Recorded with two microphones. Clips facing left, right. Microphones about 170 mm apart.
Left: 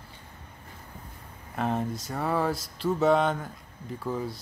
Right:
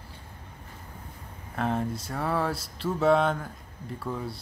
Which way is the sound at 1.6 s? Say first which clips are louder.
Even; centre (ahead or behind).